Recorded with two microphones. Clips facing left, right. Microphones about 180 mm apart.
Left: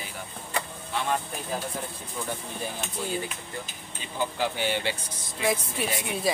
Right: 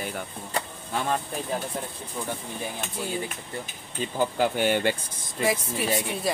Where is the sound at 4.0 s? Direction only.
50° right (ahead or behind).